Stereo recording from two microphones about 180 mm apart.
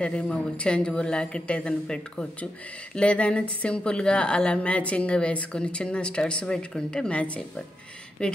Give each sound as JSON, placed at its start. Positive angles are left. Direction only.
{"t": 0.0, "sound": "a woman's voice", "side_deg": 5}